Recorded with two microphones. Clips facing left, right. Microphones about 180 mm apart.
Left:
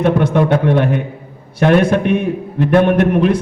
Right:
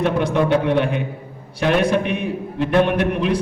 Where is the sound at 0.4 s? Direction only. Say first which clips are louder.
Left 3 dB; 50° left (ahead or behind).